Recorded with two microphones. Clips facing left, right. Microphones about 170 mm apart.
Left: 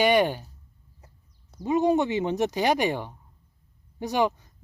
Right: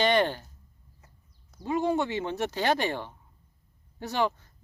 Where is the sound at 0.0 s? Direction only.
10° left (ahead or behind).